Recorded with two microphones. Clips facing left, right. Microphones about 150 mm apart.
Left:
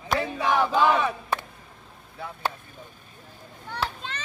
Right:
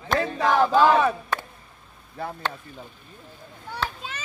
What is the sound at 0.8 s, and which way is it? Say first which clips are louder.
Chop: right 5 dB; 40° right (ahead or behind).